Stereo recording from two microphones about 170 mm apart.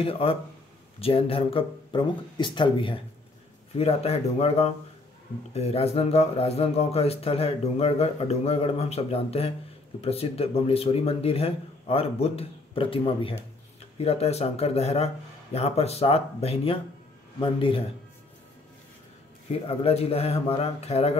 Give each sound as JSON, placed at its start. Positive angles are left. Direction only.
{"t": 0.0, "sound": "speech", "side_deg": 35}
{"t": 19.8, "sound": "speech", "side_deg": 35}